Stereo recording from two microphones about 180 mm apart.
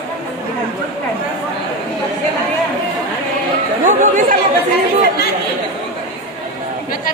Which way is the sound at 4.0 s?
45° right (ahead or behind).